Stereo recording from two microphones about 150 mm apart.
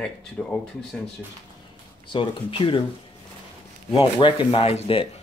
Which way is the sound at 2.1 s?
35° left (ahead or behind).